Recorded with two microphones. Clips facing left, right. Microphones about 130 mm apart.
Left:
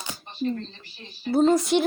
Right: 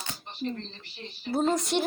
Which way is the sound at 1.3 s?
Centre (ahead or behind).